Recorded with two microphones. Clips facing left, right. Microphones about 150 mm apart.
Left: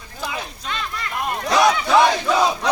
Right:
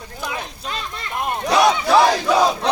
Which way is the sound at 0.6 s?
35° right (ahead or behind).